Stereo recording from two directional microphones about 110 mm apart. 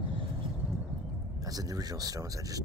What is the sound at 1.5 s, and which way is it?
Speech, 35° right (ahead or behind).